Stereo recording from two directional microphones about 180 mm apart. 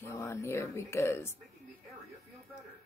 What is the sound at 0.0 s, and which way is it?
Speech, 15° left (ahead or behind).